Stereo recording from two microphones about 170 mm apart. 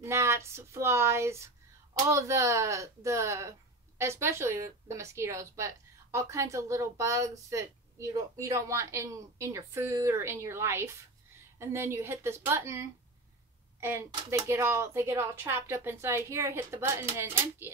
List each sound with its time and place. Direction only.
0.0 s a woman's voice: 15° right (ahead or behind)